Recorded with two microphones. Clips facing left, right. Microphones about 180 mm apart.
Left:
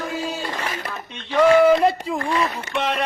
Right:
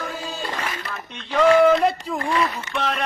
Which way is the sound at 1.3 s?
Centre (ahead or behind).